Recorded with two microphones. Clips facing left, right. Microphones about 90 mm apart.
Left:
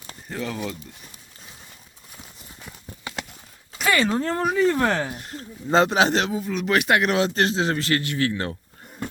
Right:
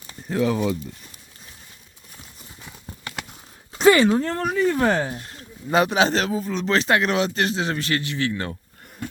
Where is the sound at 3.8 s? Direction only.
20° right (ahead or behind).